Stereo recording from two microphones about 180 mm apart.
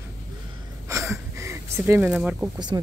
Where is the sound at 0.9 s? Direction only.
15° right (ahead or behind).